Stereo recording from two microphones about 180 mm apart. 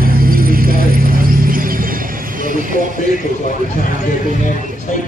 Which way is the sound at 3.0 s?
45° left (ahead or behind).